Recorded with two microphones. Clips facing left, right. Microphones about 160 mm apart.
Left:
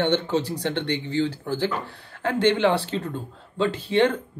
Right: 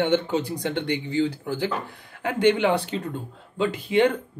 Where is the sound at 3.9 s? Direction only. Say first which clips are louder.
Even; 15° right (ahead or behind).